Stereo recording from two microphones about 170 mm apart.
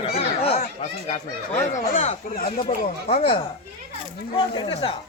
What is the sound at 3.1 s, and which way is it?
Speech, 35° left (ahead or behind).